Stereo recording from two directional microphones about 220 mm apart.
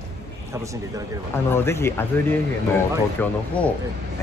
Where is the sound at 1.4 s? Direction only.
10° left (ahead or behind).